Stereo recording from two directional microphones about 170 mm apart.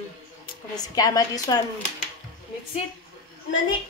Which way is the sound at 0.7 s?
20° left (ahead or behind).